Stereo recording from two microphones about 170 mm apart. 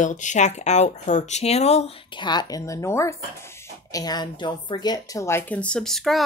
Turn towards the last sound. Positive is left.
turn(degrees=0)  # may be behind; listen again after turning